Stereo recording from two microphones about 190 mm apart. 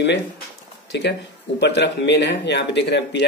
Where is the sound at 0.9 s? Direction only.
65° left (ahead or behind).